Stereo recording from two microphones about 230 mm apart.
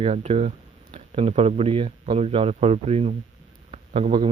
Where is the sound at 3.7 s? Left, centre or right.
Right.